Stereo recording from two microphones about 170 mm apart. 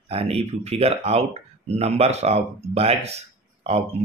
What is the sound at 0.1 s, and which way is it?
Speech, 35° right (ahead or behind).